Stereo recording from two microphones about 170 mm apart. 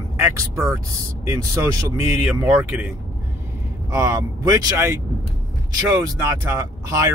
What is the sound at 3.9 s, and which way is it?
Speech, 20° right (ahead or behind).